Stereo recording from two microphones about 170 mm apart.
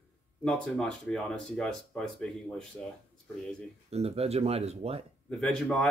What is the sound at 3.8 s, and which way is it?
Speech, 35° right (ahead or behind).